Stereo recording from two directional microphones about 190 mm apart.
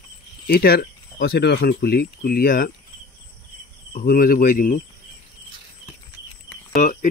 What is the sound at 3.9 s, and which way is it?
Speech, 50° left (ahead or behind).